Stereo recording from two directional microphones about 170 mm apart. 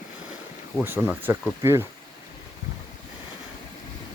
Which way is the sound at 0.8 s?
15° right (ahead or behind).